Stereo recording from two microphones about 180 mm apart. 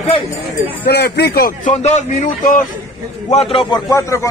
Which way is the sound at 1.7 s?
40° left (ahead or behind).